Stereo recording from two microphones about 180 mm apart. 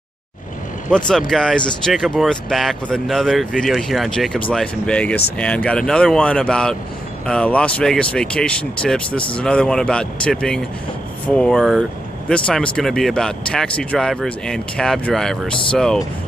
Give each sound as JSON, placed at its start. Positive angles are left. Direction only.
{"t": 0.9, "sound": "speech", "side_deg": 5}